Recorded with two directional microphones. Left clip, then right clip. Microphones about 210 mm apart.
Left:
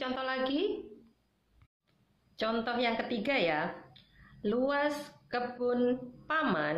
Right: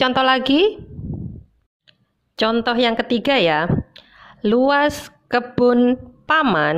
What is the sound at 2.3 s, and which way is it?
A woman's voice, 45° right (ahead or behind).